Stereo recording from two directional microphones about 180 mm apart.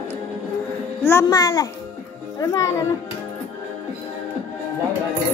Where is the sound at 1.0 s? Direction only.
15° left (ahead or behind).